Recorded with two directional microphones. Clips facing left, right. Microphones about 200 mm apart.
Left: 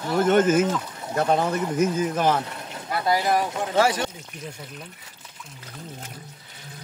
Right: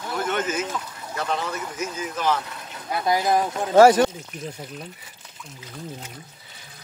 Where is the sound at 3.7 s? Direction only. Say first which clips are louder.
Right 9 dB; 45° right (ahead or behind).